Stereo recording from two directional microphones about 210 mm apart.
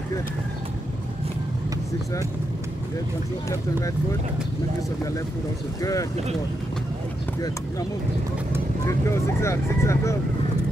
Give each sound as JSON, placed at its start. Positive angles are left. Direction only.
{"t": 5.8, "sound": "speech", "side_deg": 15}
{"t": 8.8, "sound": "speech", "side_deg": 15}